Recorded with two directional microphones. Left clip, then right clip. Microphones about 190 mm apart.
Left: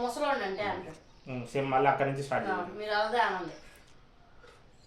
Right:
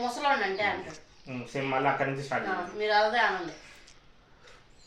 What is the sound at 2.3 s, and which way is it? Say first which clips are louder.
Speech: even; 50° left (ahead or behind).